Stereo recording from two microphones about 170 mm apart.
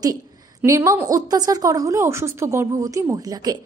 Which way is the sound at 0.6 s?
15° right (ahead or behind).